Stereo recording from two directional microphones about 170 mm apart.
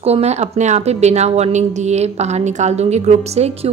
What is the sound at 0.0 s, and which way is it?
A woman's voice, 40° right (ahead or behind).